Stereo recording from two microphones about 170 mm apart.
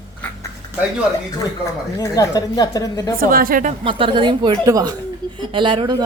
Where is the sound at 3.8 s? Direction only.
30° right (ahead or behind).